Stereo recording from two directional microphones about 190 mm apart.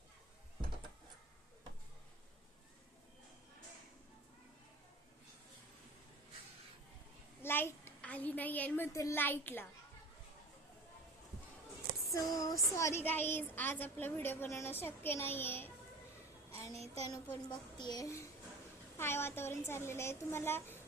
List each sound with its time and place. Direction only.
7.4 s a child's voice: 10° left (ahead or behind)
12.1 s child singing: 20° left (ahead or behind)
16.7 s child singing: 35° right (ahead or behind)
17.1 s a woman's voice: 20° left (ahead or behind)
18.9 s child singing: 15° left (ahead or behind)